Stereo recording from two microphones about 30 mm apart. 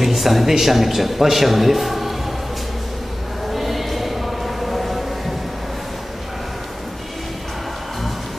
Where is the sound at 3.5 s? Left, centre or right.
Centre.